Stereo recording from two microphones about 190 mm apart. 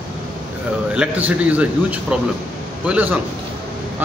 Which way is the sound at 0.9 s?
5° right (ahead or behind).